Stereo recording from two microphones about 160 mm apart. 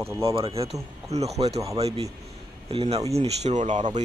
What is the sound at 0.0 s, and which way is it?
Speech, 15° right (ahead or behind).